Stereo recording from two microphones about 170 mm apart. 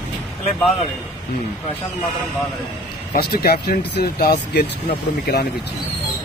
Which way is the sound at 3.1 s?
65° left (ahead or behind).